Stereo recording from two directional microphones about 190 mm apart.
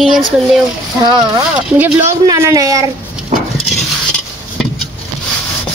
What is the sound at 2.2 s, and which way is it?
Speech, 20° right (ahead or behind).